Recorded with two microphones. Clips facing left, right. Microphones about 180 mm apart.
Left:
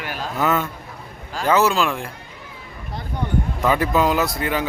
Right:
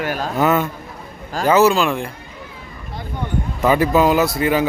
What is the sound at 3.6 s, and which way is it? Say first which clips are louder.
Speech: right 5 dB; 5° right (ahead or behind).